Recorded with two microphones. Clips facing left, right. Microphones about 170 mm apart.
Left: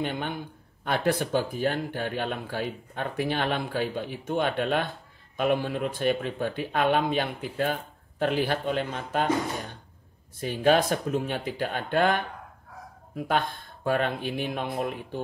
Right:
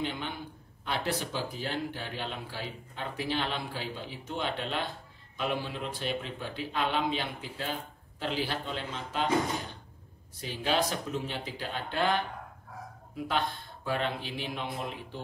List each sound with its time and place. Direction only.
0.0 s speech: 55° left (ahead or behind)
10.4 s speech: 55° left (ahead or behind)